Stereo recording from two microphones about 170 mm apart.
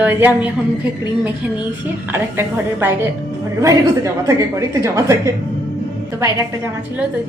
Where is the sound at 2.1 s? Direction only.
15° right (ahead or behind).